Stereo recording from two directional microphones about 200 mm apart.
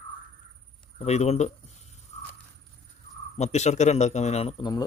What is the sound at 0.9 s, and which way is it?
Speech, 35° left (ahead or behind).